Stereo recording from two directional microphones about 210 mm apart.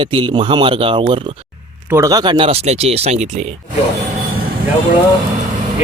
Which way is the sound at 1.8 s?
15° right (ahead or behind).